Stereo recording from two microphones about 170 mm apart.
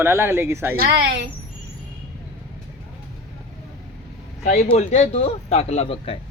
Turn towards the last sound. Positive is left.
turn(degrees=35)  # may be behind; listen again after turning